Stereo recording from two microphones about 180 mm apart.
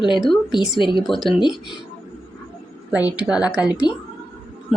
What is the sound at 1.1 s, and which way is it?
Speech, centre (ahead or behind).